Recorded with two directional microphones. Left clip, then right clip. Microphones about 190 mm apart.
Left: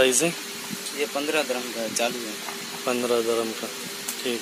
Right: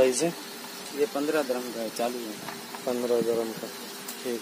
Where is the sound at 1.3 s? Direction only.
40° right (ahead or behind).